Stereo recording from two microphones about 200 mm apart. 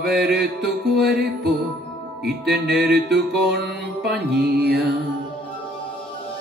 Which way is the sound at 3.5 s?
55° right (ahead or behind).